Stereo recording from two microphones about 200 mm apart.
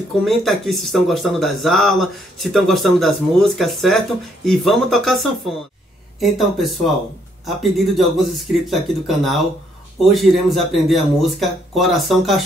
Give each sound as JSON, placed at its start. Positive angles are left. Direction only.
{"t": 0.2, "sound": "speech", "side_deg": 0}